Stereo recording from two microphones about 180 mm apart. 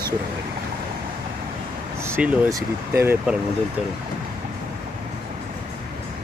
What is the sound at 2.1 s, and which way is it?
Speech, 5° right (ahead or behind).